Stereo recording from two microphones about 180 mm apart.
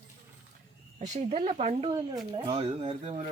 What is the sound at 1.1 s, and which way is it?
Speech, 40° right (ahead or behind).